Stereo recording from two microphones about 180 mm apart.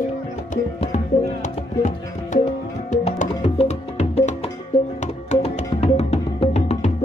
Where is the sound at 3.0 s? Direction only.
35° left (ahead or behind).